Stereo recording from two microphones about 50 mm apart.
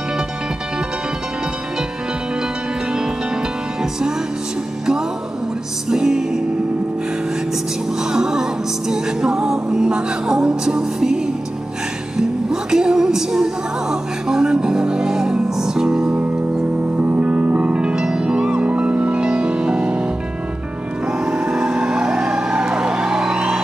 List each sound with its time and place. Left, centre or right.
5.9 s music: centre
8.0 s music: centre
12.2 s music: centre
16.9 s music: right
21.2 s vehicle: centre